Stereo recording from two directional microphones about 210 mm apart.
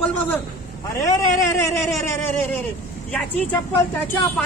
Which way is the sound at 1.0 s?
15° left (ahead or behind).